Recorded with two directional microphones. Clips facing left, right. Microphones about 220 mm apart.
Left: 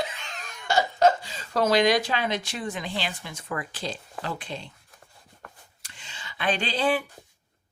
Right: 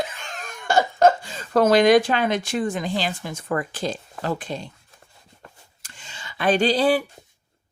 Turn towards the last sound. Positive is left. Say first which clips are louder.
# right 7 dB
turn(degrees=-40)  # may be behind; listen again after turning